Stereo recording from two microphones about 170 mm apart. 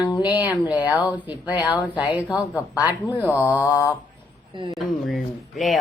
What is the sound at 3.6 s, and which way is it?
Mantra, 20° left (ahead or behind).